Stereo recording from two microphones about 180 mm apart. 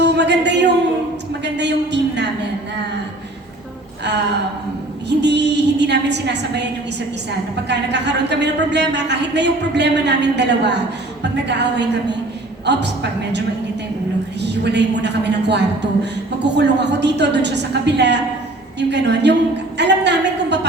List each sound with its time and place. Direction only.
0.2 s a sound: 75° right (ahead or behind)
5.0 s a woman's voice: 70° right (ahead or behind)
14.4 s a woman's voice: 70° right (ahead or behind)